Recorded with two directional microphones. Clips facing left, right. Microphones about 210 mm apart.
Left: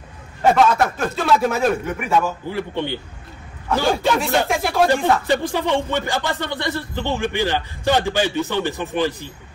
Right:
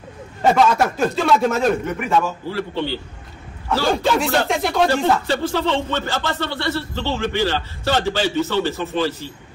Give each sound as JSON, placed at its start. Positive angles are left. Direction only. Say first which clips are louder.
{"t": 0.4, "sound": "a man's voice", "louder": "even", "side_deg": 5}
{"t": 2.2, "sound": "speech", "louder": "even", "side_deg": 15}
{"t": 3.9, "sound": "a man's voice", "louder": "right 2 dB", "side_deg": 0}
{"t": 4.8, "sound": "speech", "louder": "left 1 dB", "side_deg": 15}